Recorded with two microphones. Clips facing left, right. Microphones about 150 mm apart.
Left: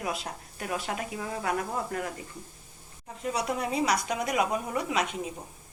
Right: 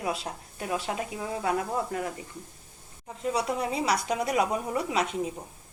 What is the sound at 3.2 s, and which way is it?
A woman's voice, 30° right (ahead or behind).